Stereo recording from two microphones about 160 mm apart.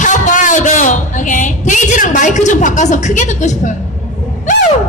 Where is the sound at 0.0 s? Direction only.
50° left (ahead or behind).